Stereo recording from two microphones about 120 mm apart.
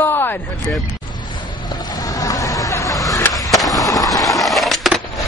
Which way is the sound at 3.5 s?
Centre (ahead or behind).